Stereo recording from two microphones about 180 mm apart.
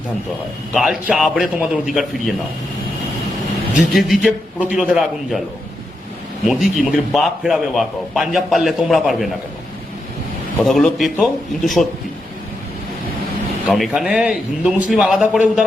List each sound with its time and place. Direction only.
0.7 s a man's voice: centre (ahead or behind)
3.9 s a man's voice: centre (ahead or behind)
6.5 s a man's voice: centre (ahead or behind)
10.6 s a man's voice: centre (ahead or behind)
13.7 s a man's voice: centre (ahead or behind)